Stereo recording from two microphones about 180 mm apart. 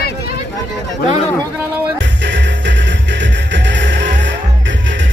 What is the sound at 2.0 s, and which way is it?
Music, 75° right (ahead or behind).